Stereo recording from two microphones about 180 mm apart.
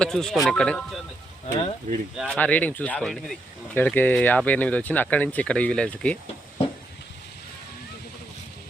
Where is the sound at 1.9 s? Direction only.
40° right (ahead or behind).